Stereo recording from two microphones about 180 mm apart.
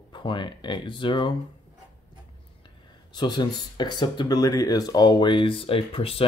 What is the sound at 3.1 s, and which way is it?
Speech, 25° left (ahead or behind).